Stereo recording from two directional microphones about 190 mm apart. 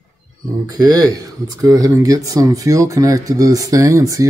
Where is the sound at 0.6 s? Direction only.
20° right (ahead or behind).